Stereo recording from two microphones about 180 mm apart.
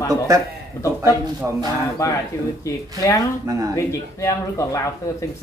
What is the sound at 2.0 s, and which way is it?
Speech, 15° left (ahead or behind).